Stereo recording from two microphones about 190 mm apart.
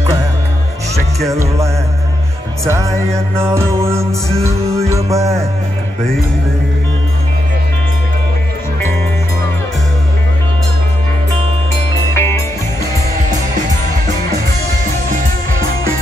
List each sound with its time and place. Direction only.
2.6 s music: 15° right (ahead or behind)
12.2 s music: 10° left (ahead or behind)